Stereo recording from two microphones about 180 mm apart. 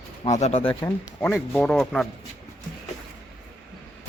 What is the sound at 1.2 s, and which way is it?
Speech, 10° left (ahead or behind).